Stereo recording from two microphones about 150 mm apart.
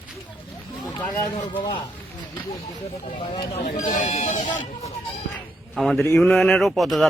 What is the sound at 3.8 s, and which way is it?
Speech, 55° left (ahead or behind).